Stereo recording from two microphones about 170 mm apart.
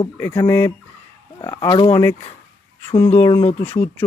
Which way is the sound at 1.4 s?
25° left (ahead or behind).